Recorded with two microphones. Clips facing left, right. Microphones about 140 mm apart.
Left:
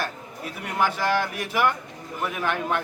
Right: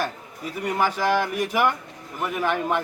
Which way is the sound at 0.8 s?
10° right (ahead or behind).